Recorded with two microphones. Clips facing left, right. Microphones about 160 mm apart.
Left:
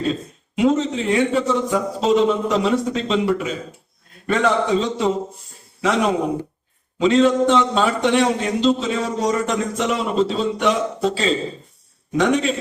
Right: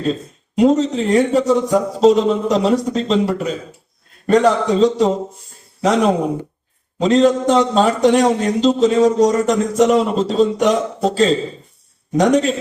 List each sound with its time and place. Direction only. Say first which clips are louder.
0.5 s a man's voice: right 4 dB; 40° right (ahead or behind)
7.0 s a man's voice: right 2 dB; 40° right (ahead or behind)